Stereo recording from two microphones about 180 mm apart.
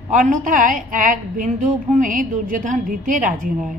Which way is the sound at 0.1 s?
45° right (ahead or behind).